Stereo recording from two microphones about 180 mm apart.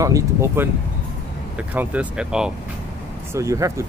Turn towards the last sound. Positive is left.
turn(degrees=-15)  # may be behind; listen again after turning